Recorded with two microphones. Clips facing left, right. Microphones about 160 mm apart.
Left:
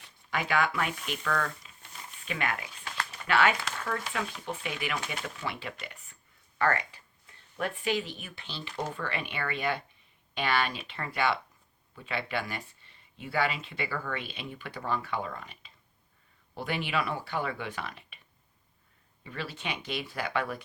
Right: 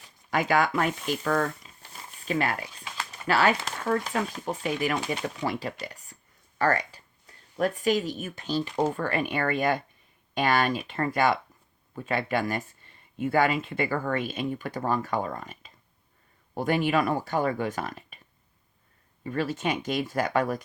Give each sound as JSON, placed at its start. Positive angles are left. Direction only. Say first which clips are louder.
{"t": 0.3, "sound": "speech", "louder": "right 5 dB", "side_deg": -40}
{"t": 19.2, "sound": "speech", "louder": "right 10 dB", "side_deg": -45}